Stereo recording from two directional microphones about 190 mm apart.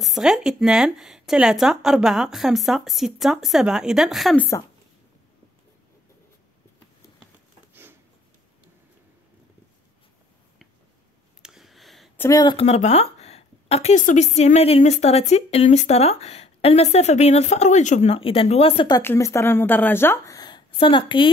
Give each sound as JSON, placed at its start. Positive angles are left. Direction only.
{"t": 0.0, "sound": "speech", "side_deg": 0}
{"t": 11.4, "sound": "a sound", "side_deg": 0}
{"t": 12.2, "sound": "speech", "side_deg": 20}
{"t": 12.6, "sound": "a woman's voice", "side_deg": 35}
{"t": 18.9, "sound": "speech", "side_deg": 15}